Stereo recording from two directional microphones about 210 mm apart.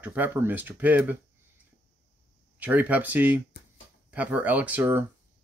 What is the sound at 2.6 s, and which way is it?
Speech, 5° right (ahead or behind).